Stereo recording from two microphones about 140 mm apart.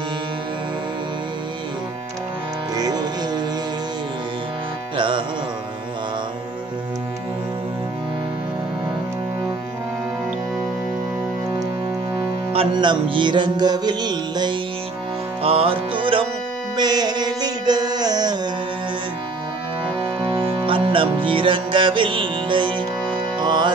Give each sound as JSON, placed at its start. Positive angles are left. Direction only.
{"t": 2.7, "sound": "music", "side_deg": -30}
{"t": 4.9, "sound": "music", "side_deg": -35}
{"t": 12.5, "sound": "music", "side_deg": -35}
{"t": 15.4, "sound": "music", "side_deg": -45}
{"t": 20.2, "sound": "music", "side_deg": -40}